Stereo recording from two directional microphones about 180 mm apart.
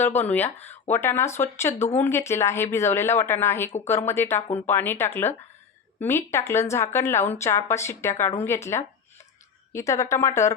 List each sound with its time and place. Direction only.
0.0 s speech: 10° left (ahead or behind)